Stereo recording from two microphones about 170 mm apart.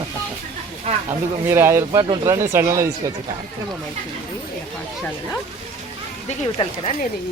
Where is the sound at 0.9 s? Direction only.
40° right (ahead or behind).